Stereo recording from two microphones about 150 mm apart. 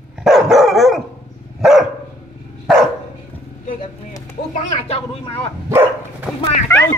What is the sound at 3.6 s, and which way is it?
Vehicle, 60° left (ahead or behind).